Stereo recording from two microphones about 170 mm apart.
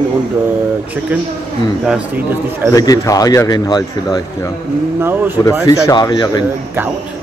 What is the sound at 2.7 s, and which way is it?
A man's voice, 20° left (ahead or behind).